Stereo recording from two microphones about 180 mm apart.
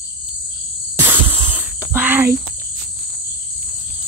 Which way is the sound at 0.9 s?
10° right (ahead or behind).